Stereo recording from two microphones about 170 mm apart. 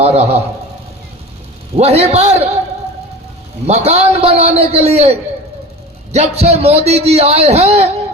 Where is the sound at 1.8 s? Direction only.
35° right (ahead or behind).